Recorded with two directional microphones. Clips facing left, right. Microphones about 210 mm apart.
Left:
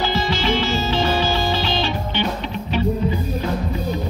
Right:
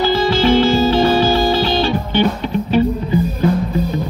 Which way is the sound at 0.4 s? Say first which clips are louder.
Right 9 dB; 45° right (ahead or behind).